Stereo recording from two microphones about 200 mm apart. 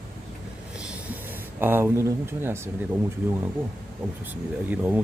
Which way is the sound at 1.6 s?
10° right (ahead or behind).